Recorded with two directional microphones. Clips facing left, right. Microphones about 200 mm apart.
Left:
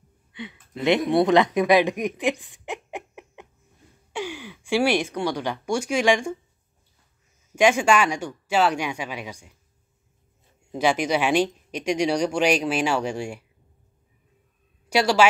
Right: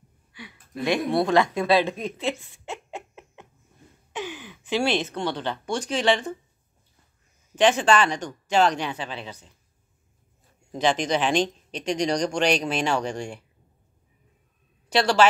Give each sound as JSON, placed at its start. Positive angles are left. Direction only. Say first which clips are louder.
{"t": 0.3, "sound": "speech", "louder": "left 5 dB", "side_deg": 20}
{"t": 7.5, "sound": "speech", "louder": "left 1 dB", "side_deg": 10}
{"t": 10.7, "sound": "speech", "louder": "left 1 dB", "side_deg": 10}
{"t": 14.9, "sound": "a woman's voice", "louder": "left 1 dB", "side_deg": 10}